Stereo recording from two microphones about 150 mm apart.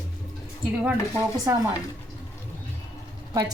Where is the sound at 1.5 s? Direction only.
15° right (ahead or behind).